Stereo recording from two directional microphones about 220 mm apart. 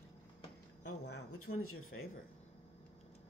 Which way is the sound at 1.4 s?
75° left (ahead or behind).